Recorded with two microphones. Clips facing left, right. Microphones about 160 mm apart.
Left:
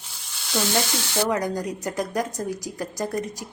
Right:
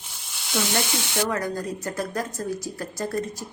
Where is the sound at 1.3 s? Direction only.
15° left (ahead or behind).